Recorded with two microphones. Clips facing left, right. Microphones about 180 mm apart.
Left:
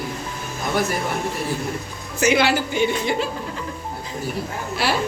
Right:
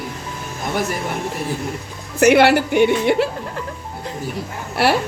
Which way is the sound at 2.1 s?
65° right (ahead or behind).